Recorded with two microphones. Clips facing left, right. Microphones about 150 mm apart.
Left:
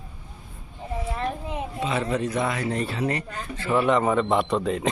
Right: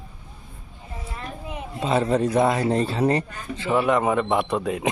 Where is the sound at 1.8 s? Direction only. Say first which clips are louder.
Right 5 dB; 35° right (ahead or behind).